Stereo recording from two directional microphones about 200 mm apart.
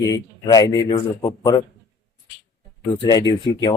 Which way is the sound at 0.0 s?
20° left (ahead or behind).